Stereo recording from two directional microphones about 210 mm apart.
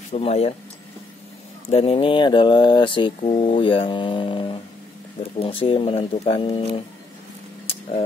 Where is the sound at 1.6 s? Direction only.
30° left (ahead or behind).